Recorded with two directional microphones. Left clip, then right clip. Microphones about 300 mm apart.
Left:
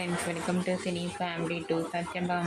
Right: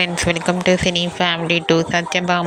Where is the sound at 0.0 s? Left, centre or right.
Right.